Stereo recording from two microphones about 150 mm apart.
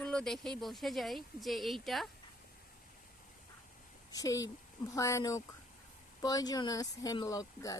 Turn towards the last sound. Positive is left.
turn(degrees=25)  # may be behind; listen again after turning